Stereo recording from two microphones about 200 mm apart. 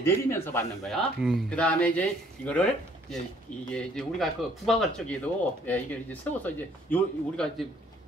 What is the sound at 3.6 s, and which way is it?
Speech, 5° left (ahead or behind).